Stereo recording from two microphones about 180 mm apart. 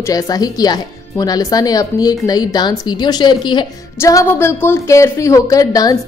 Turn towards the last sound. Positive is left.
turn(degrees=20)  # may be behind; listen again after turning